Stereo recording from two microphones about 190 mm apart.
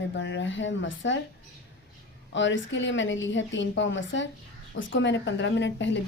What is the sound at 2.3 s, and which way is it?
A woman's voice, 75° left (ahead or behind).